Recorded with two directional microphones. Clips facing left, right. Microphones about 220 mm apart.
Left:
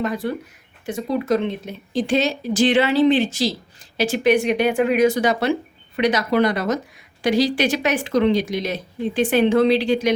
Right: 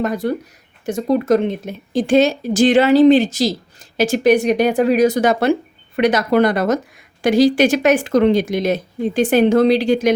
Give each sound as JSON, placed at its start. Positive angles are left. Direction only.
{"t": 0.0, "sound": "speech", "side_deg": -45}